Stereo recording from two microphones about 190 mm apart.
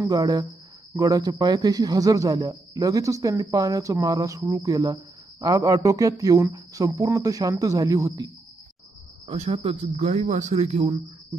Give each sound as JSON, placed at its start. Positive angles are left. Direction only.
{"t": 0.0, "sound": "speech", "side_deg": -20}
{"t": 9.3, "sound": "speech", "side_deg": -35}